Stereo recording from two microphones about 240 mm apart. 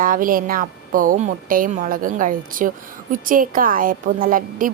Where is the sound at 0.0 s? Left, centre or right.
Right.